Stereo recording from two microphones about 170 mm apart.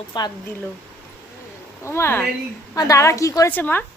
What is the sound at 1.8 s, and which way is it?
A woman's voice, 15° left (ahead or behind).